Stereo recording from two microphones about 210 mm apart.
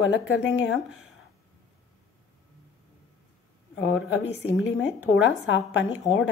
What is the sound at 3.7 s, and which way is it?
Speech, 55° left (ahead or behind).